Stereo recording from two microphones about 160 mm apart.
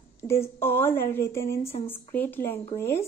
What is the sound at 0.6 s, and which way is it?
Speech, 15° left (ahead or behind).